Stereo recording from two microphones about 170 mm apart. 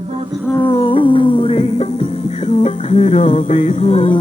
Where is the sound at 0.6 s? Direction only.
30° left (ahead or behind).